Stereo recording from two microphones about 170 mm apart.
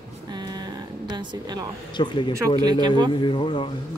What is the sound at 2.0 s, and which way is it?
Speech, 25° left (ahead or behind).